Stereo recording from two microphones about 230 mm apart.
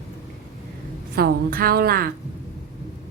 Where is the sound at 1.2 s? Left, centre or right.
Right.